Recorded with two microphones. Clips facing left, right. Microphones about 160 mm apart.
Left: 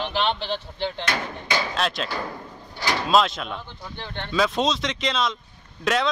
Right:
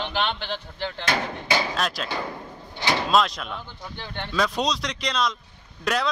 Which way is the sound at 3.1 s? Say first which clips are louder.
Left 4 dB; centre (ahead or behind).